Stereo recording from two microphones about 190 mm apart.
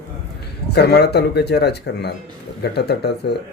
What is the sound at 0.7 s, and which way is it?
Speech, 60° left (ahead or behind).